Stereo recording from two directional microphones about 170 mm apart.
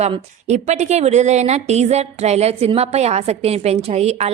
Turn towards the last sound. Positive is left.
turn(degrees=-40)  # may be behind; listen again after turning